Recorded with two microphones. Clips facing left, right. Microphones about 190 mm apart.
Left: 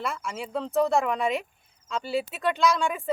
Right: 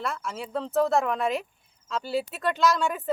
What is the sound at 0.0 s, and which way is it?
A woman's voice, centre (ahead or behind).